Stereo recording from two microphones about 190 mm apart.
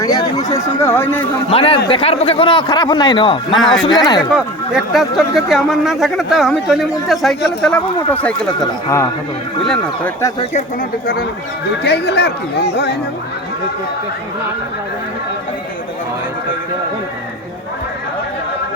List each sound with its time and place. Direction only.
0.0 s speech: 20° left (ahead or behind)
1.5 s speech: 30° left (ahead or behind)
3.5 s speech: centre (ahead or behind)
9.6 s speech: 5° left (ahead or behind)
11.0 s speech: 50° left (ahead or behind)